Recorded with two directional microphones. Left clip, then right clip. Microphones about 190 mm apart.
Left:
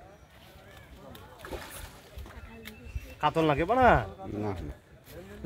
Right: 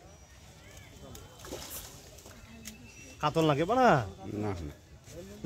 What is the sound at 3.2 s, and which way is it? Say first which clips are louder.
Speech: left 2 dB; 40° right (ahead or behind).